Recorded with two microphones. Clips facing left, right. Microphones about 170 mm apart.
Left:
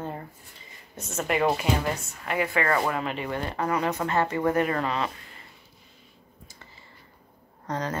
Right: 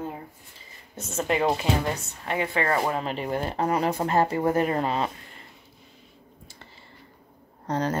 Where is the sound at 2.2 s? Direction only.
25° right (ahead or behind).